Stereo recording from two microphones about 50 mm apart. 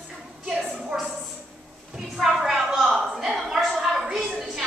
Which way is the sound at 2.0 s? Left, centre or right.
Centre.